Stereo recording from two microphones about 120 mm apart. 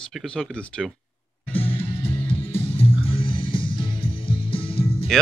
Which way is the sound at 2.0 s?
50° left (ahead or behind).